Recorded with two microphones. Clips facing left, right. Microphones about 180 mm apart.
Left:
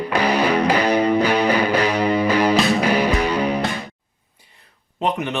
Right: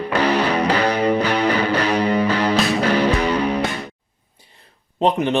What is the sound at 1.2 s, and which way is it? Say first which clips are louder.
Music: left 1 dB; 10° left (ahead or behind).